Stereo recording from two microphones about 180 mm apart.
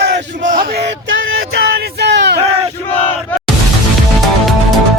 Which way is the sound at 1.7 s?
70° right (ahead or behind).